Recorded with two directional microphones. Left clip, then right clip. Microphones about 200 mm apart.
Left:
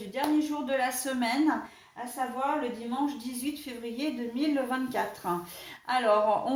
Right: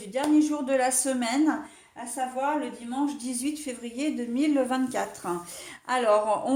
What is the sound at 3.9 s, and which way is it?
Speech, 45° right (ahead or behind).